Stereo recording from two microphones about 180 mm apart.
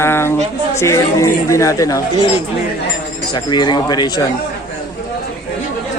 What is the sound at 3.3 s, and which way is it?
Speech, 25° left (ahead or behind).